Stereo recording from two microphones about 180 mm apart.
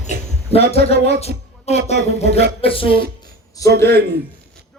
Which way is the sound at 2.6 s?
30° left (ahead or behind).